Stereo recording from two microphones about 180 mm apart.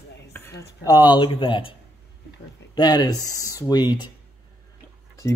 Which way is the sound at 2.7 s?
20° left (ahead or behind).